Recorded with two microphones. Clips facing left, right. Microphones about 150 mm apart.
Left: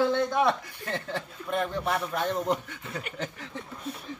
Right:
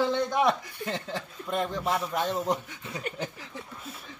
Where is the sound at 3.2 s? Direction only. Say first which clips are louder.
Left 1 dB; 10° right (ahead or behind).